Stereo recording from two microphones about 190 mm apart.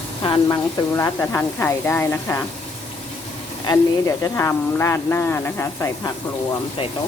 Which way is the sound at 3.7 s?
25° left (ahead or behind).